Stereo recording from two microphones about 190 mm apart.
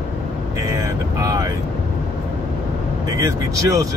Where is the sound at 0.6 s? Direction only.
15° right (ahead or behind).